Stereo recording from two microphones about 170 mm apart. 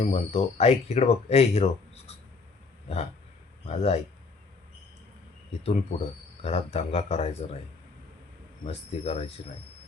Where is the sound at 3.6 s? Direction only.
40° left (ahead or behind).